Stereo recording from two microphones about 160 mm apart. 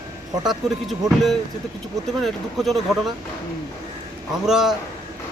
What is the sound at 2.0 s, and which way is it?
Speech, centre (ahead or behind).